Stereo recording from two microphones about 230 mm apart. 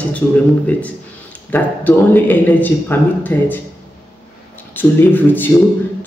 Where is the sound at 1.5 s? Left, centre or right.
Centre.